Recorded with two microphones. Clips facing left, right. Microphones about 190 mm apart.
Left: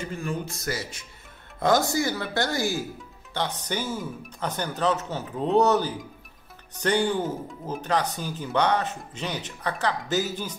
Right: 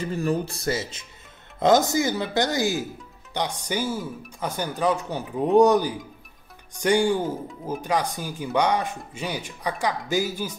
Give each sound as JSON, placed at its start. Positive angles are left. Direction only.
{"t": 0.0, "sound": "speech", "side_deg": -35}